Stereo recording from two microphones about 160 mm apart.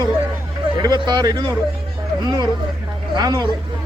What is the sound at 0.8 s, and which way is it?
Speech, 25° right (ahead or behind).